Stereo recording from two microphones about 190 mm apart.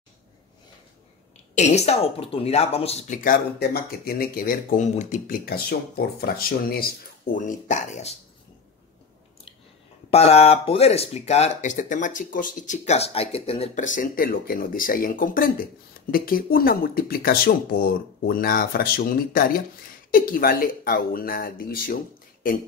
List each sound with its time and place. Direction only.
1.5 s speech: 35° left (ahead or behind); by 6.9 s 50° left (ahead or behind)
7.3 s speech: 40° left (ahead or behind)
10.1 s speech: 35° left (ahead or behind); by 22.6 s 50° left (ahead or behind)